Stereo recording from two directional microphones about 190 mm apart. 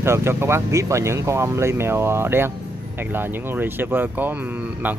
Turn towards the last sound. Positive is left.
turn(degrees=-10)  # may be behind; listen again after turning